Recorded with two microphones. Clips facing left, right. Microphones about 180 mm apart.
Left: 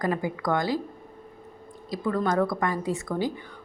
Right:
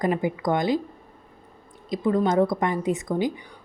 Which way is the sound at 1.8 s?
20° right (ahead or behind).